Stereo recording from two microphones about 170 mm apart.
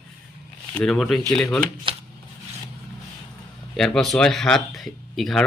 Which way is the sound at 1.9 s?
30° right (ahead or behind).